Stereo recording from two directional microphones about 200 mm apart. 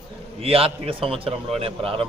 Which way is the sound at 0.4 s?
30° right (ahead or behind).